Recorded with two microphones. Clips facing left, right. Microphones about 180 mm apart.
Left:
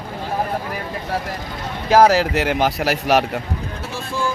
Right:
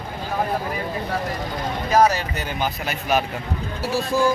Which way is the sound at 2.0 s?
90° left.